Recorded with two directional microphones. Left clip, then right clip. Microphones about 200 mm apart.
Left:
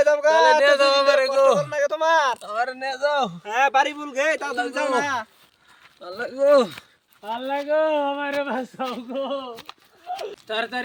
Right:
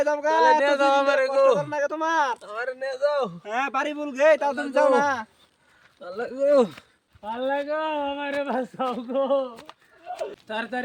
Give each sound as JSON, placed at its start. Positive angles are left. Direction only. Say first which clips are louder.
{"t": 0.0, "sound": "speech", "louder": "left 4 dB", "side_deg": -5}
{"t": 3.4, "sound": "a man's voice", "louder": "left 7 dB", "side_deg": -10}
{"t": 6.0, "sound": "speech", "louder": "left 3 dB", "side_deg": -5}
{"t": 7.4, "sound": "a man's voice", "louder": "left 4 dB", "side_deg": -15}
{"t": 9.7, "sound": "a sound", "louder": "left 4 dB", "side_deg": 20}
{"t": 10.4, "sound": "speech", "louder": "left 6 dB", "side_deg": -10}